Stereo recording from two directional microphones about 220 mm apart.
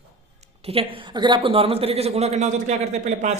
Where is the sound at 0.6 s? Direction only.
25° right (ahead or behind).